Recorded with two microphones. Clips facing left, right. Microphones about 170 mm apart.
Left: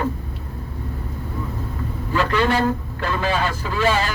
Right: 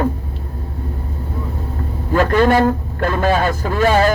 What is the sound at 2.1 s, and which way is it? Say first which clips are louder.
Speech: right 6 dB; 50° right (ahead or behind).